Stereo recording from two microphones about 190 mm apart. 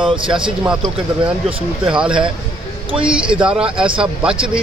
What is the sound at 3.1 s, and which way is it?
Speech, 5° right (ahead or behind).